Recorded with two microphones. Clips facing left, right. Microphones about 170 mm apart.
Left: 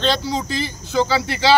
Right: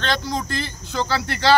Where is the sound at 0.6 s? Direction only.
5° left (ahead or behind).